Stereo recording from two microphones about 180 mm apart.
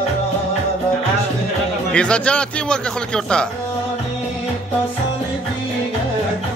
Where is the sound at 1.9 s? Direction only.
5° left (ahead or behind).